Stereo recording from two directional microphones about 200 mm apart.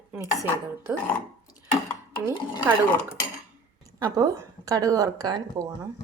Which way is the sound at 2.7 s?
10° right (ahead or behind).